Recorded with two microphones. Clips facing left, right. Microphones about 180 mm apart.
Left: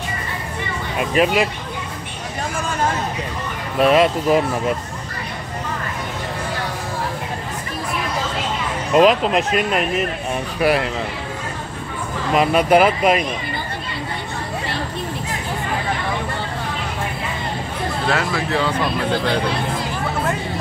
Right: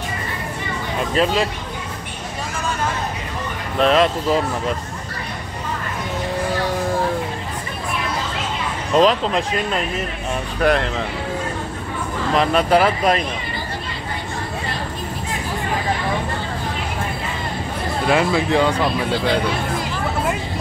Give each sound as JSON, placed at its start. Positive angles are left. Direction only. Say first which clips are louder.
{"t": 0.9, "sound": "speech", "louder": "left 2 dB", "side_deg": 15}
{"t": 3.8, "sound": "speech", "louder": "left 2 dB", "side_deg": 10}
{"t": 8.9, "sound": "speech", "louder": "left 2 dB", "side_deg": 15}
{"t": 10.6, "sound": "speech", "louder": "even", "side_deg": 5}
{"t": 12.4, "sound": "speech", "louder": "left 2 dB", "side_deg": 15}
{"t": 18.0, "sound": "speech", "louder": "right 5 dB", "side_deg": -15}